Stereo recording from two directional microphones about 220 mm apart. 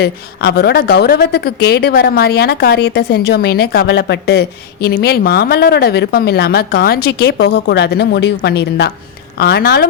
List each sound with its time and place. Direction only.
0.0 s speech: 45° left (ahead or behind)